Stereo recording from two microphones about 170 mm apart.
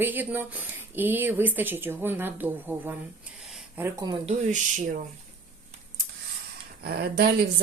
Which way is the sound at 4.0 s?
20° right (ahead or behind).